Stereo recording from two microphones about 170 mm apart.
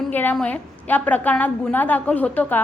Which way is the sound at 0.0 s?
10° left (ahead or behind).